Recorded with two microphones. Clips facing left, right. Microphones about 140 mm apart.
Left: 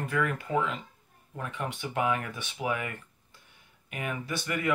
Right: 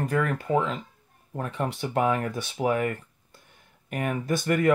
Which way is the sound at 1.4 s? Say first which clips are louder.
Right 6 dB; 40° right (ahead or behind).